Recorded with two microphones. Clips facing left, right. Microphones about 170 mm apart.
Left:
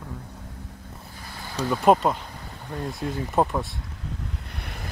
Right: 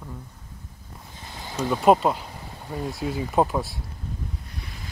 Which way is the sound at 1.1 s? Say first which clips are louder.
Right 2 dB; 20° right (ahead or behind).